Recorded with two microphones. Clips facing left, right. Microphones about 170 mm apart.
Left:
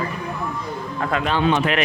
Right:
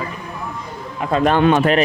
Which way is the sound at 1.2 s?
50° right (ahead or behind).